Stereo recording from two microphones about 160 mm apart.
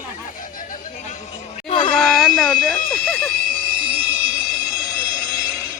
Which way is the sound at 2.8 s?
5° left (ahead or behind).